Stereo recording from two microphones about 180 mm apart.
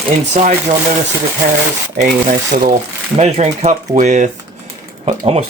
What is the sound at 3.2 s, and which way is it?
Speech, 35° right (ahead or behind).